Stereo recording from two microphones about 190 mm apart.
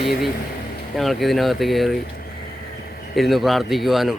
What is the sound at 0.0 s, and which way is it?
Speech, centre (ahead or behind).